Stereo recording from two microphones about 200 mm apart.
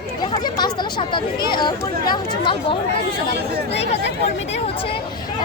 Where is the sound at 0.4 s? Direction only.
20° left (ahead or behind).